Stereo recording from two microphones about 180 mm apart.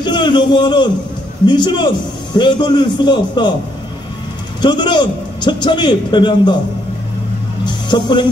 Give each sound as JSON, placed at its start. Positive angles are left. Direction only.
{"t": 0.0, "sound": "a man's voice", "side_deg": 25}
{"t": 4.6, "sound": "a man's voice", "side_deg": 25}
{"t": 7.6, "sound": "speech", "side_deg": 25}